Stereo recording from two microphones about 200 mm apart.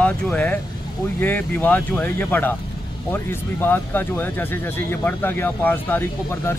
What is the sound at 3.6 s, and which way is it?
Speech, 10° left (ahead or behind).